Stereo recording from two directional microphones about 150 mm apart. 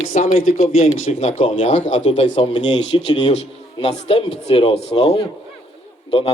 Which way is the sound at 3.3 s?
45° left (ahead or behind).